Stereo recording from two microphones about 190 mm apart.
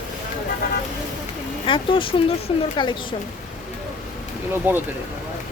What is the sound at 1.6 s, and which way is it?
Speech, 25° left (ahead or behind).